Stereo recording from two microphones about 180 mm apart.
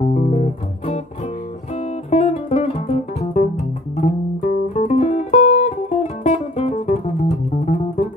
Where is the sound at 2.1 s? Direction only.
35° left (ahead or behind).